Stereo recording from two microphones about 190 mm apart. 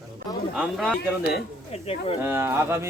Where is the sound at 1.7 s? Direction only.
35° left (ahead or behind).